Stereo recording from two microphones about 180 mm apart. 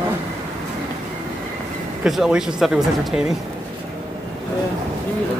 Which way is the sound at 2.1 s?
Centre (ahead or behind).